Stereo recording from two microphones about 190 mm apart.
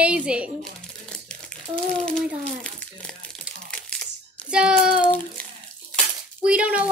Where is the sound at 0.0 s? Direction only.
5° right (ahead or behind).